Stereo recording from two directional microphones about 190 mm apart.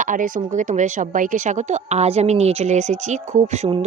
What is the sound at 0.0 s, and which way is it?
A woman's voice, 45° right (ahead or behind).